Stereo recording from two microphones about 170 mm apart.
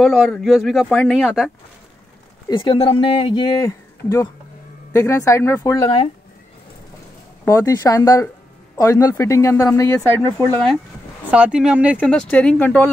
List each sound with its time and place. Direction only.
0.0 s speech: centre (ahead or behind)
2.5 s speech: 30° left (ahead or behind)
7.4 s speech: 20° left (ahead or behind)
11.2 s speech: 5° right (ahead or behind)
12.0 s speech: 10° left (ahead or behind)